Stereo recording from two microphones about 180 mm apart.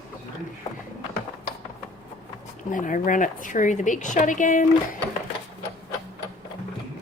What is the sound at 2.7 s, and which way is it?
A woman's voice, 45° left (ahead or behind).